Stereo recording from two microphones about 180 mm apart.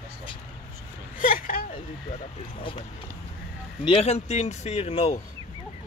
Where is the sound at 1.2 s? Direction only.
50° left (ahead or behind).